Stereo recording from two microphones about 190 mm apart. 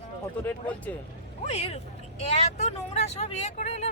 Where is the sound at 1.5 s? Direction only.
35° left (ahead or behind).